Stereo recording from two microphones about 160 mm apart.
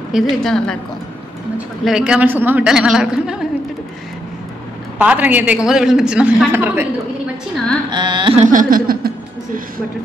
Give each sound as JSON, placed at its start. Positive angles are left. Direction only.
{"t": 0.1, "sound": "a woman's voice", "side_deg": 0}
{"t": 1.9, "sound": "a woman's voice", "side_deg": -5}
{"t": 4.9, "sound": "a man's voice", "side_deg": -10}
{"t": 7.9, "sound": "carnatic music", "side_deg": -30}
{"t": 8.4, "sound": "a sound", "side_deg": -55}